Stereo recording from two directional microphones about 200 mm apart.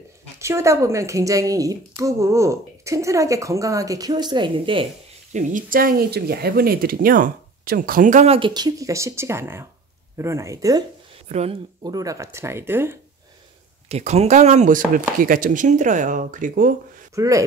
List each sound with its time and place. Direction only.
0.4 s a woman's voice: 15° right (ahead or behind)
5.3 s speech: 40° right (ahead or behind)
8.4 s a woman's voice: 20° right (ahead or behind)
11.2 s speech: 35° right (ahead or behind)
11.8 s a woman's voice: 20° right (ahead or behind)
13.8 s speech: 30° right (ahead or behind)
17.1 s speech: 15° right (ahead or behind)